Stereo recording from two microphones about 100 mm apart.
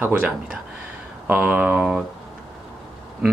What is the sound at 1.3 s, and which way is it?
Speech, 15° right (ahead or behind).